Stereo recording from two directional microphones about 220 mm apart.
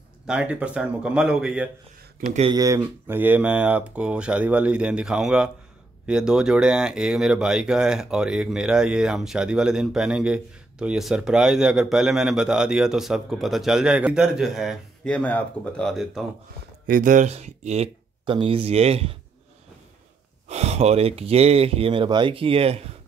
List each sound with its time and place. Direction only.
0.3 s speech: 5° right (ahead or behind)
2.1 s speech: 30° right (ahead or behind)
2.5 s speech: 15° right (ahead or behind)
16.8 s speech: 40° right (ahead or behind)
20.4 s speech: 30° right (ahead or behind)